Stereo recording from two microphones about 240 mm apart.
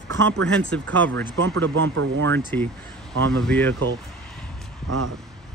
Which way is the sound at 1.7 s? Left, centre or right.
Right.